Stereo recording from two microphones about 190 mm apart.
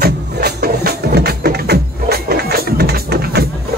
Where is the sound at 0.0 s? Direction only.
55° right (ahead or behind).